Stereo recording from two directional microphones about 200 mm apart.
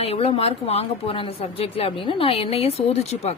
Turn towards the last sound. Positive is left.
turn(degrees=30)  # may be behind; listen again after turning